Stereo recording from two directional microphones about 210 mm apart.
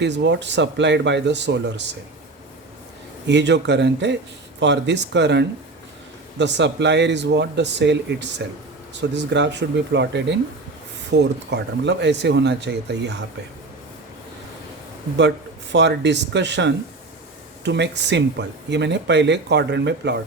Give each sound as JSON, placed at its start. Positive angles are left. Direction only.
{"t": 0.0, "sound": "speech", "side_deg": -55}
{"t": 3.2, "sound": "speech", "side_deg": -55}
{"t": 15.7, "sound": "speech", "side_deg": -55}